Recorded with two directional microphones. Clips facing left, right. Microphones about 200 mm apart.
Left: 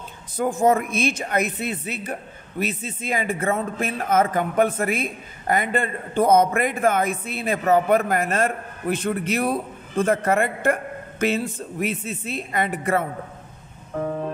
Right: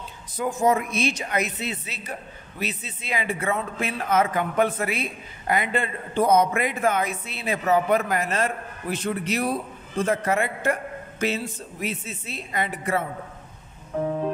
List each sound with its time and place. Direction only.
0.4 s speech: 50° left (ahead or behind)